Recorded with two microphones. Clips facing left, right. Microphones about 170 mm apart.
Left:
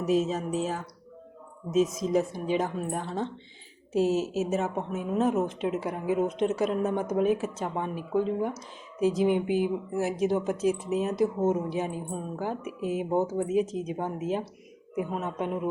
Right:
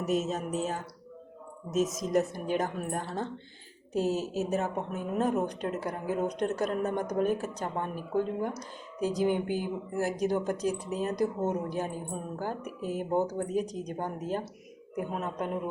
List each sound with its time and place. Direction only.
0.0 s speech: centre (ahead or behind)